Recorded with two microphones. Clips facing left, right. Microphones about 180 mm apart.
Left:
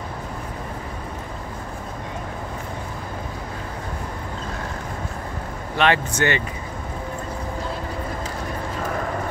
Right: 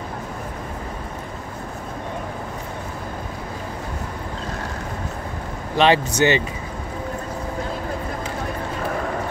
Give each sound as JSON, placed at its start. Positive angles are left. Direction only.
{"t": 5.8, "sound": "speech", "side_deg": -25}